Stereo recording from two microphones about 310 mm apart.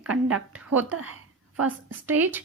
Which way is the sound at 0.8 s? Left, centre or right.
Right.